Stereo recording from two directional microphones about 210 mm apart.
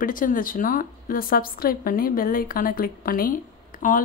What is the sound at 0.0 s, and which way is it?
A woman's voice, 40° left (ahead or behind).